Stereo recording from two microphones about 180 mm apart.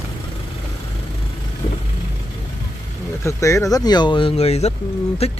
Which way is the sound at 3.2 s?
15° left (ahead or behind).